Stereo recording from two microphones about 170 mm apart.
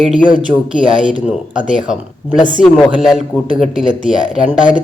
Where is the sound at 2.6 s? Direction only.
5° right (ahead or behind).